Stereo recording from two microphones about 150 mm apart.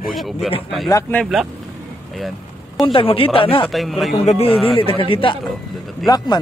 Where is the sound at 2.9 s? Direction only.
40° left (ahead or behind).